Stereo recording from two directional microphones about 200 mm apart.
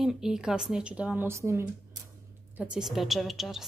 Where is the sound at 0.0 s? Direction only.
Centre (ahead or behind).